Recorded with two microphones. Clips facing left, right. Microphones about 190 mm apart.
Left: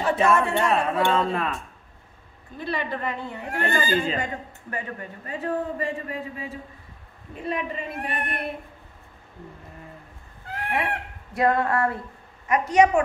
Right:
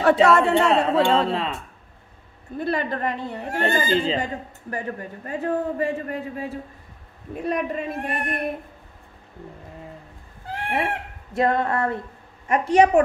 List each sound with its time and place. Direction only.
0.0 s a woman's voice: 70° right (ahead or behind)
1.3 s speech: 25° right (ahead or behind)
2.6 s a woman's voice: 50° right (ahead or behind); by 4.3 s 25° right (ahead or behind)
4.6 s a man's voice: 45° right (ahead or behind)
10.5 s speech: 25° right (ahead or behind)
12.6 s a woman's voice: 30° right (ahead or behind)